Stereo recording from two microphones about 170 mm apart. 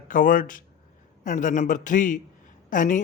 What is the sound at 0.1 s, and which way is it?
A man's voice, 55° left (ahead or behind).